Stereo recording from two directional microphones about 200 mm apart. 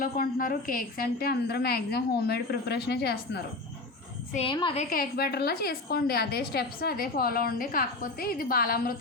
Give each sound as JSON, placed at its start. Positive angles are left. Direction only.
{"t": 0.0, "sound": "a woman's voice", "side_deg": 45}
{"t": 4.4, "sound": "a woman's voice", "side_deg": 25}
{"t": 4.8, "sound": "a woman's voice", "side_deg": 45}